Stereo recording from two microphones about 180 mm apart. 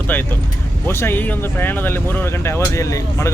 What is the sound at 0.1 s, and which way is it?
Speech, 10° left (ahead or behind).